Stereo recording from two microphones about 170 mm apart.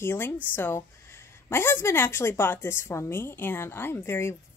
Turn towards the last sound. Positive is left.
turn(degrees=15)  # may be behind; listen again after turning